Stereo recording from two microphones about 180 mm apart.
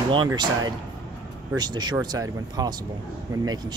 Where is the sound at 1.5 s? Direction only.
25° right (ahead or behind).